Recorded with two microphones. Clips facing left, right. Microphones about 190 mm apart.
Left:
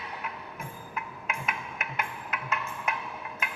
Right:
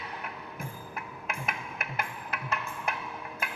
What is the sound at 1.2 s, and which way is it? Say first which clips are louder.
Music: even; 40° right (ahead or behind).